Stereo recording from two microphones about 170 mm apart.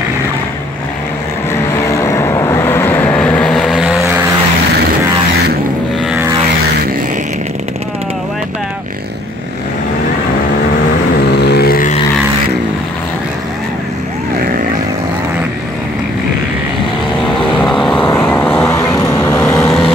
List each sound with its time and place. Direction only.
1.9 s vehicle: 15° left (ahead or behind); by 4.1 s 5° right (ahead or behind)
11.2 s vehicle: 75° left (ahead or behind)
17.6 s vehicle: 5° left (ahead or behind)